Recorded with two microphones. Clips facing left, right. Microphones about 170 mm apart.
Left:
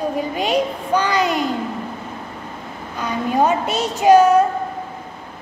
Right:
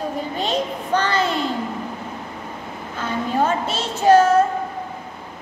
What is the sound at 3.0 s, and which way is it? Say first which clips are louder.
A woman's voice: left 3 dB; 15° left (ahead or behind).